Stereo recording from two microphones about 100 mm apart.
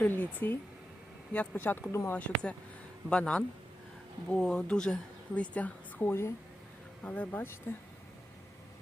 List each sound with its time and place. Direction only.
0.2 s speech: 20° left (ahead or behind)
2.1 s speech: 10° left (ahead or behind)